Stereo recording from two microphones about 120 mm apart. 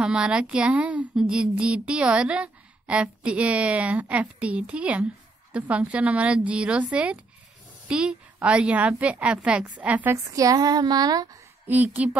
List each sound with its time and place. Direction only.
0.0 s a woman's voice: 5° right (ahead or behind)
10.1 s speech: 30° right (ahead or behind)
11.6 s a woman's voice: 15° right (ahead or behind)